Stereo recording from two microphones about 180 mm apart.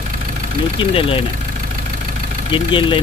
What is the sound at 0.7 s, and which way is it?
Speech, 30° left (ahead or behind).